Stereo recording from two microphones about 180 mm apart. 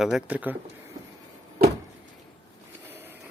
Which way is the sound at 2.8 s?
10° right (ahead or behind).